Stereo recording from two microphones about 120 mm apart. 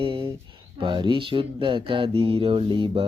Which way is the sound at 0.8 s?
40° right (ahead or behind).